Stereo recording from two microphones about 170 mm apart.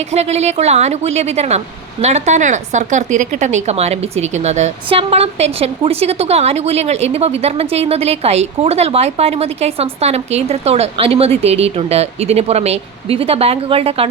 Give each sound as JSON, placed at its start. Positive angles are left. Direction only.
{"t": 0.1, "sound": "speech", "side_deg": -40}